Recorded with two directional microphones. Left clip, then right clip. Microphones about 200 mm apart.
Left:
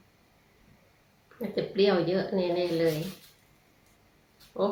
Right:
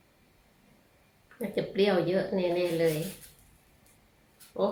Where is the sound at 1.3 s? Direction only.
25° right (ahead or behind).